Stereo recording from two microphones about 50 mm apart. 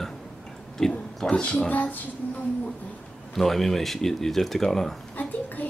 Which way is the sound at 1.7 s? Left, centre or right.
Left.